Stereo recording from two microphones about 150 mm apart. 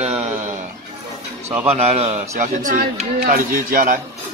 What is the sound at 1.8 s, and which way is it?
Speech, 45° right (ahead or behind).